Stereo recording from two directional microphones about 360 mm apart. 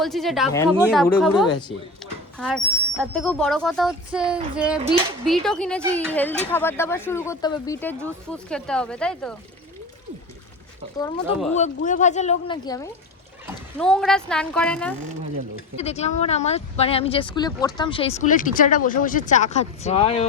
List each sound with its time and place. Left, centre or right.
0.0 s speech: centre
1.5 s speech: centre
3.0 s speech: centre
11.0 s speech: centre
11.5 s speech: centre
15.8 s speech: centre